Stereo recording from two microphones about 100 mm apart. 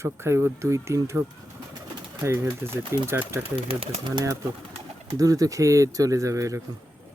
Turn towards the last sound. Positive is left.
turn(degrees=-30)  # may be behind; listen again after turning